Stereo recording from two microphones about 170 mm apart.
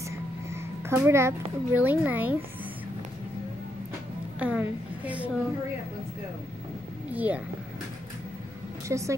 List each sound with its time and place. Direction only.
0.0 s a sound: 15° right (ahead or behind)
4.4 s a woman's voice: 10° right (ahead or behind)
7.1 s speech: 10° right (ahead or behind)
8.8 s a woman's voice: 20° right (ahead or behind)